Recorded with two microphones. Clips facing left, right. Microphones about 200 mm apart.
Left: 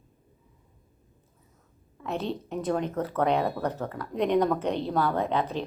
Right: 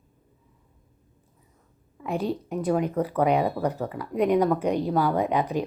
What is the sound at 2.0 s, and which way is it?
Speech, 10° right (ahead or behind).